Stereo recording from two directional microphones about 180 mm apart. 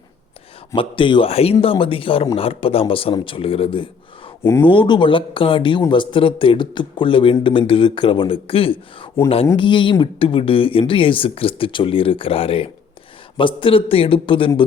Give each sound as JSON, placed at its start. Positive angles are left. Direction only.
{"t": 0.8, "sound": "speech", "side_deg": 25}
{"t": 4.4, "sound": "a man's voice", "side_deg": 15}
{"t": 4.7, "sound": "speech", "side_deg": 25}